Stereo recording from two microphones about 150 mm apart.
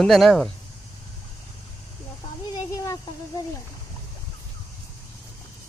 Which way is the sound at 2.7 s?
25° left (ahead or behind).